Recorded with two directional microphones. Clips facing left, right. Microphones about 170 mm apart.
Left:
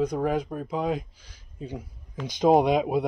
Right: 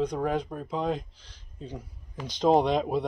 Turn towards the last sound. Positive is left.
turn(degrees=10)  # may be behind; listen again after turning